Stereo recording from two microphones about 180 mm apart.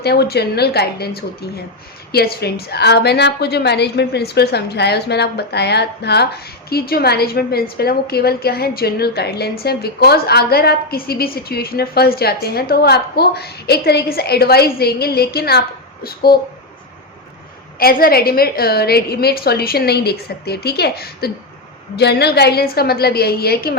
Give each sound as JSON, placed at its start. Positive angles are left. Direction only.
{"t": 0.0, "sound": "a woman's voice", "side_deg": 65}
{"t": 17.7, "sound": "a woman's voice", "side_deg": 55}